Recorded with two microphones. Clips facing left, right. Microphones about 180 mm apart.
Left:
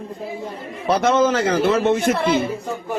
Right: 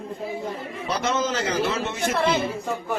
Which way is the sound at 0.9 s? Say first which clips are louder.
Left 9 dB; 55° left (ahead or behind).